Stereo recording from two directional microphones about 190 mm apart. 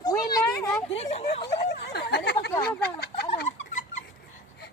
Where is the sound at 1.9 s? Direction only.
60° left (ahead or behind).